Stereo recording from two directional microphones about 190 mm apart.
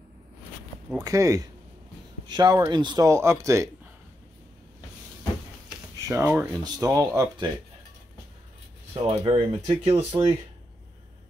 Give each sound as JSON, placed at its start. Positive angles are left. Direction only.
{"t": 1.0, "sound": "speech", "side_deg": -15}
{"t": 6.0, "sound": "speech", "side_deg": -15}
{"t": 8.9, "sound": "speech", "side_deg": -30}